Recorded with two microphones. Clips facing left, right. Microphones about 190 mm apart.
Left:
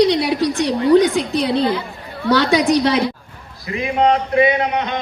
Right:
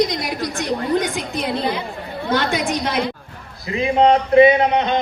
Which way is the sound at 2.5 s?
90° left.